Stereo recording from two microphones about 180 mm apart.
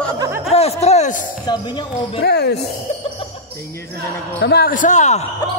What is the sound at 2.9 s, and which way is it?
Music, 35° left (ahead or behind).